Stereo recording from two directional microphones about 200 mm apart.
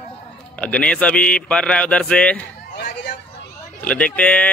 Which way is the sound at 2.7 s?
45° left (ahead or behind).